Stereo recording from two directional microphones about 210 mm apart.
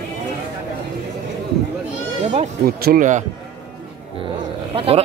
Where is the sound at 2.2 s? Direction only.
35° right (ahead or behind).